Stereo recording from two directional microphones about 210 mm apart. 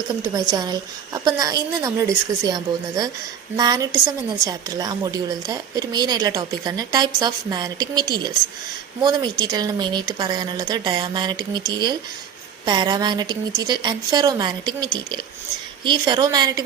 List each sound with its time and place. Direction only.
0.2 s a woman's voice: 20° right (ahead or behind)